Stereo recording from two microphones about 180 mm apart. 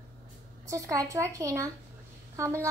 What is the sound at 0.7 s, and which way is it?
A child's voice, 20° right (ahead or behind).